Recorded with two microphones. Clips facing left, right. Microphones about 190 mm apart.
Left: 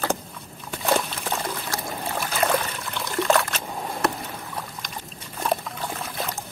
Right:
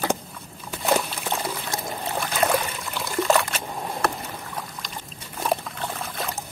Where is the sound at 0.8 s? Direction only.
5° right (ahead or behind).